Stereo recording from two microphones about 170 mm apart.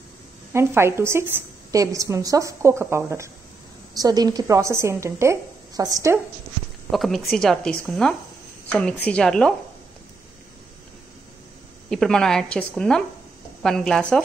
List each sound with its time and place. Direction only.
0.5 s a woman's voice: 15° right (ahead or behind)
6.9 s speech: centre (ahead or behind)
11.9 s speech: 5° left (ahead or behind)